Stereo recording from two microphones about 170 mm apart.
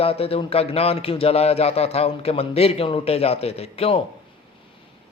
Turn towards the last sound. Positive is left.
turn(degrees=35)  # may be behind; listen again after turning